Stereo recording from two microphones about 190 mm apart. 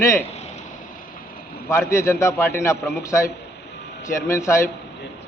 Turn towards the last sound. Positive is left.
turn(degrees=15)  # may be behind; listen again after turning